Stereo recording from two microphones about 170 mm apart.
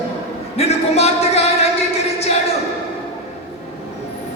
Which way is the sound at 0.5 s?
40° left (ahead or behind).